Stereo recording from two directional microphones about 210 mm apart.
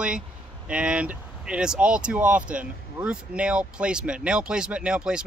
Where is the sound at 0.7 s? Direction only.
5° right (ahead or behind).